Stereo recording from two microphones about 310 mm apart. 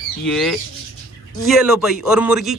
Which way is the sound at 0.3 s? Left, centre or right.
Centre.